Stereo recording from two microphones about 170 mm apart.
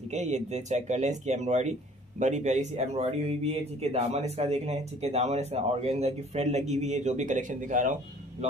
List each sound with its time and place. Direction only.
0.1 s speech: 40° right (ahead or behind)